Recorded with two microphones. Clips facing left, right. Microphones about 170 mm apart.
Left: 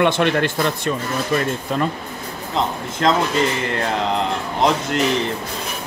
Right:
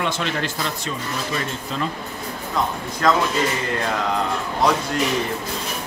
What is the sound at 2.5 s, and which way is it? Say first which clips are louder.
Speech: left 2 dB; 25° left (ahead or behind).